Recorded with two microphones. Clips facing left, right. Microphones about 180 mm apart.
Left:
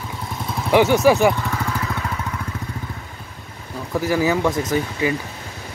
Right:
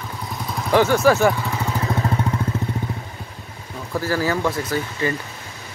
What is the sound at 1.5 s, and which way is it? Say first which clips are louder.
Vehicle: even; 20° right (ahead or behind).